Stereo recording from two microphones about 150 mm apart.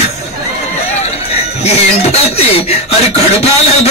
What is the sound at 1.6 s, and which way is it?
Speech, 45° left (ahead or behind).